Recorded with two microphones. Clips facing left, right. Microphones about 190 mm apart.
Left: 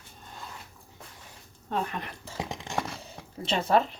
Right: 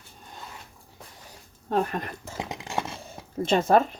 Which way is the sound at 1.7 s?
45° right (ahead or behind).